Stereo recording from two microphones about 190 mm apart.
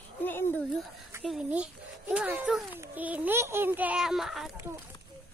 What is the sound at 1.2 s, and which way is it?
A child's voice, 5° right (ahead or behind).